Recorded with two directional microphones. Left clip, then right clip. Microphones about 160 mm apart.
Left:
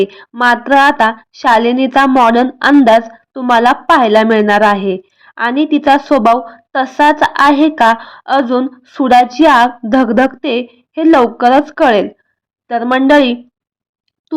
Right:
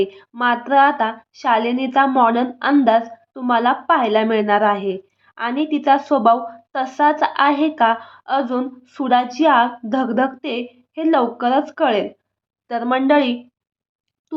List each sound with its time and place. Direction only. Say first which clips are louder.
0.0 s a woman's voice: left 7 dB; 35° left (ahead or behind)
12.6 s a woman's voice: left 6 dB; 25° left (ahead or behind)